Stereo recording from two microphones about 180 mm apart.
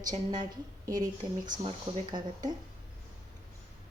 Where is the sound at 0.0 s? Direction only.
25° right (ahead or behind).